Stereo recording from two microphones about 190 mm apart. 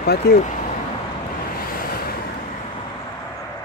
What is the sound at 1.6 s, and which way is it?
Waves, 50° left (ahead or behind).